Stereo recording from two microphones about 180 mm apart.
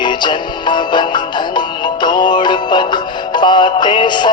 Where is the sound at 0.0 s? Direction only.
25° left (ahead or behind).